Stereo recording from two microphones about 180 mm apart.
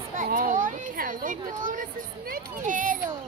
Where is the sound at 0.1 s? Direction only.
50° right (ahead or behind).